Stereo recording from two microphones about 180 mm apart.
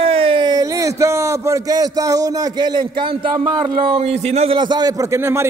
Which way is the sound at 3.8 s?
30° right (ahead or behind).